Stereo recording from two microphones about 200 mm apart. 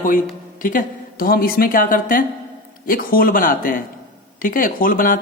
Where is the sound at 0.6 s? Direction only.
45° left (ahead or behind).